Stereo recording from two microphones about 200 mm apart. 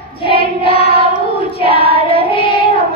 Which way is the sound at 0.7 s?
30° left (ahead or behind).